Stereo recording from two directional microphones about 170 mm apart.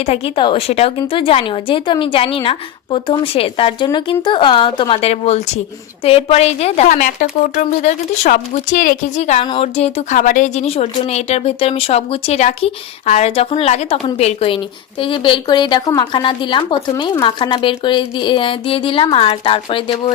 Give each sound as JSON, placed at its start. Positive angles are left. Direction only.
{"t": 0.0, "sound": "speech", "side_deg": 35}